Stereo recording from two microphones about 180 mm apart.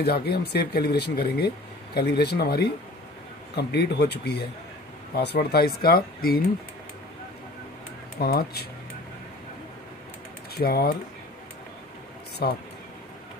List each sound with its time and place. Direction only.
0.0 s speech: 65° left (ahead or behind)
8.2 s speech: 60° left (ahead or behind)
10.5 s speech: 60° left (ahead or behind)
12.4 s speech: 60° left (ahead or behind)